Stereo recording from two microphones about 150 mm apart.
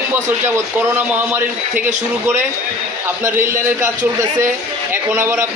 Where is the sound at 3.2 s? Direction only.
15° right (ahead or behind).